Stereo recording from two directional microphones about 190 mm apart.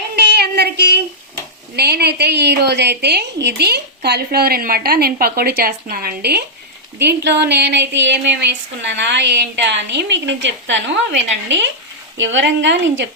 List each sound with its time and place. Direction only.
0.2 s child singing: 60° right (ahead or behind)
1.7 s a woman's voice: 60° right (ahead or behind)